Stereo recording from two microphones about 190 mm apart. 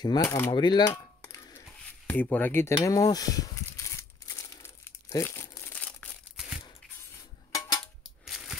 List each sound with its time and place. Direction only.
0.0 s speech: 20° left (ahead or behind)
0.5 s a sound: 25° left (ahead or behind)
2.0 s speech: 10° left (ahead or behind)
4.6 s crumpling: 10° left (ahead or behind)
7.5 s cutlery: 15° left (ahead or behind)
8.3 s a sound: centre (ahead or behind)